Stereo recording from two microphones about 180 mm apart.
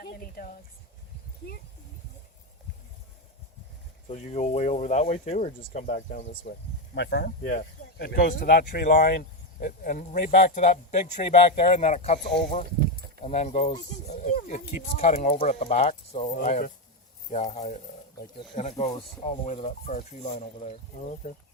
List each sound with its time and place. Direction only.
0.0 s a sound: 55° left (ahead or behind)
4.1 s speech: 40° left (ahead or behind)
6.9 s speech: 70° left (ahead or behind); by 12.2 s 40° left (ahead or behind)
13.2 s speech: 40° left (ahead or behind)
14.3 s speech: 55° left (ahead or behind)
14.9 s speech: 40° left (ahead or behind)
21.2 s speech: 60° left (ahead or behind)